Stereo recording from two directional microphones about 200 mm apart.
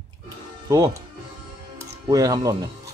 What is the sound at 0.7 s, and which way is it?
Speech, 15° right (ahead or behind).